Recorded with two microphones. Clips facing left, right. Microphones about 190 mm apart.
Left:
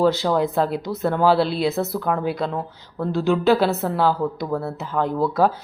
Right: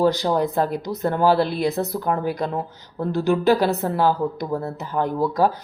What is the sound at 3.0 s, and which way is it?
Speech, 15° right (ahead or behind).